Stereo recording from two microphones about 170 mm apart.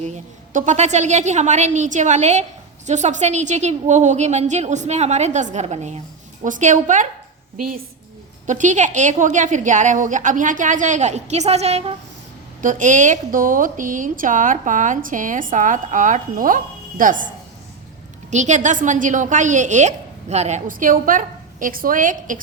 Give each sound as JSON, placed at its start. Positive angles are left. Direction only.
{"t": 0.0, "sound": "a woman's voice", "side_deg": -45}
{"t": 8.4, "sound": "a woman's voice", "side_deg": -45}
{"t": 12.6, "sound": "a woman's voice", "side_deg": -50}
{"t": 18.3, "sound": "a woman's voice", "side_deg": -45}